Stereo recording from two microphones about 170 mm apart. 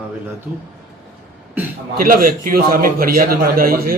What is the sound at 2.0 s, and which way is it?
A man's voice, 55° right (ahead or behind).